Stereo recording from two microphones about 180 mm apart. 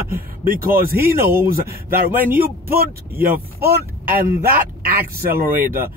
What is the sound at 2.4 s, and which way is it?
A man's voice, 55° right (ahead or behind).